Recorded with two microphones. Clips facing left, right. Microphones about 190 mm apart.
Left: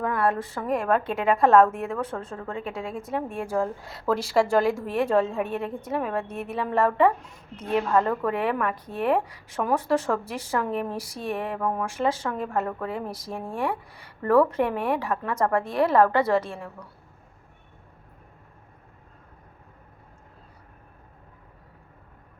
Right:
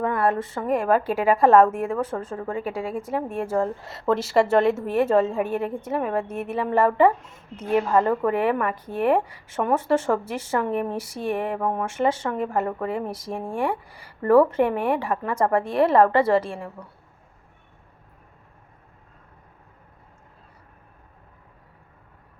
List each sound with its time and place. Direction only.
0.0 s a sound: centre (ahead or behind)
0.6 s a woman's voice: centre (ahead or behind)
15.5 s a woman's voice: 30° right (ahead or behind)